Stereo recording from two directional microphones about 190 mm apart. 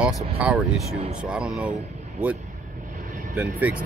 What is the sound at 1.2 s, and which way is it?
Speech, 5° right (ahead or behind).